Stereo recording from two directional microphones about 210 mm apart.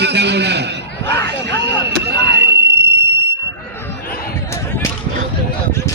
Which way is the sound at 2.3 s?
55° right (ahead or behind).